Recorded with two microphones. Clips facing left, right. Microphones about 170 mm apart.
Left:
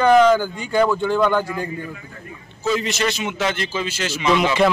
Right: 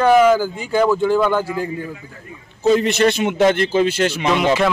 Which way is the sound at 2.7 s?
60° right (ahead or behind).